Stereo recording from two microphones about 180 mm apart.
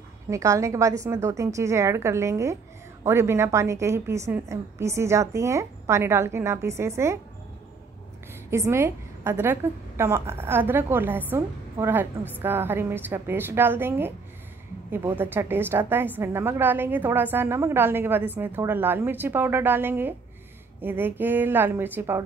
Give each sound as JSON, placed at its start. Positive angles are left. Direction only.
{"t": 0.3, "sound": "a woman's voice", "side_deg": -15}
{"t": 8.5, "sound": "a woman's voice", "side_deg": -15}